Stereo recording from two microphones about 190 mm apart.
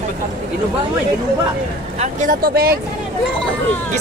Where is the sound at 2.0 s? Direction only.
45° right (ahead or behind).